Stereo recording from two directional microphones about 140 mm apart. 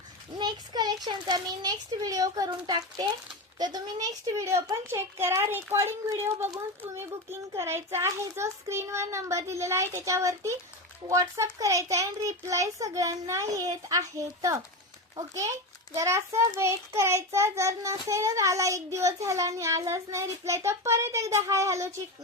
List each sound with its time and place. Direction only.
0.3 s a child's voice: 30° right (ahead or behind)
16.0 s a child's voice: 20° right (ahead or behind)